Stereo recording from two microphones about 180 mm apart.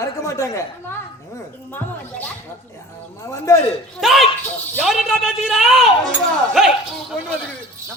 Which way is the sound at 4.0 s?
Centre (ahead or behind).